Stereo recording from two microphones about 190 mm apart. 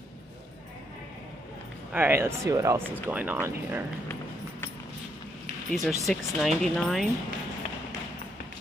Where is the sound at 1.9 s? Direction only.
10° right (ahead or behind).